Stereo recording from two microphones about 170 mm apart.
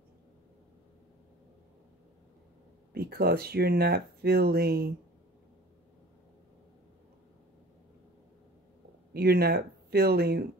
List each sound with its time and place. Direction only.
2.9 s speech: 65° right (ahead or behind)
9.1 s speech: 65° right (ahead or behind)